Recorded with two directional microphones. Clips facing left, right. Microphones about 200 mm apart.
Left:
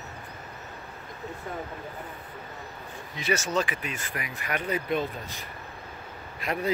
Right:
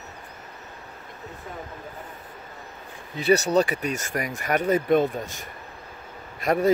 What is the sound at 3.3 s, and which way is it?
Speech, 35° right (ahead or behind).